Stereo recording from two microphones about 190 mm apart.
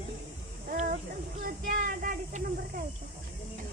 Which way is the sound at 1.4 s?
50° right (ahead or behind).